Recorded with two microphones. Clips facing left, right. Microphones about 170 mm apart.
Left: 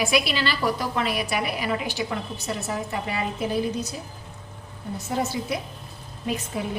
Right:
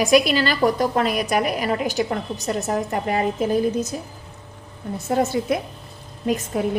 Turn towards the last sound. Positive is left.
turn(degrees=-50)  # may be behind; listen again after turning